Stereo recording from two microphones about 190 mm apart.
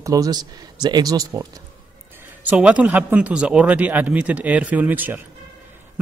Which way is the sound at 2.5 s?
5° right (ahead or behind).